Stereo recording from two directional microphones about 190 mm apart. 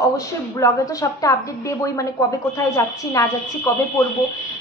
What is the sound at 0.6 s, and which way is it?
A woman's voice, 20° left (ahead or behind).